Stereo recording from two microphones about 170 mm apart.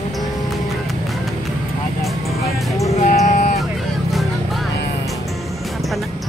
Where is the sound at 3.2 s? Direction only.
50° left (ahead or behind).